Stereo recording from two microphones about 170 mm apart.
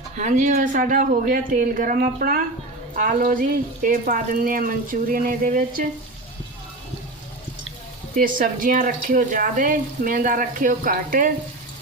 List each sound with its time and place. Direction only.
0.2 s speech: 45° right (ahead or behind)
8.1 s speech: 55° right (ahead or behind)